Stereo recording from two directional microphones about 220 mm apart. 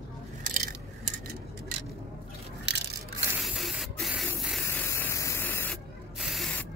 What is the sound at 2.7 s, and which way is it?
Crushing, 50° right (ahead or behind).